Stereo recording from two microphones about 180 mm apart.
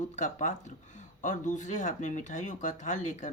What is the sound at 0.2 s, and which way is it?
Speech, 45° left (ahead or behind).